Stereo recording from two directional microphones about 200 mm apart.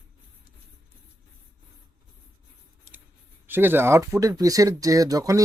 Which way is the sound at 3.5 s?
10° right (ahead or behind).